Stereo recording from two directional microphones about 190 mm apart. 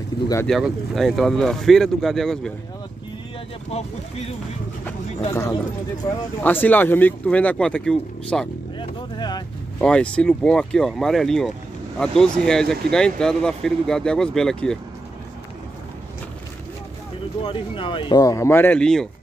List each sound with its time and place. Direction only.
0.2 s speech: 60° left (ahead or behind)
0.5 s speech: centre (ahead or behind)
3.7 s speech: 35° left (ahead or behind)
6.0 s speech: 10° left (ahead or behind)
8.7 s vehicle: 25° left (ahead or behind)
9.8 s speech: 5° left (ahead or behind)
17.4 s speech: 25° left (ahead or behind); by 19.0 s 5° left (ahead or behind)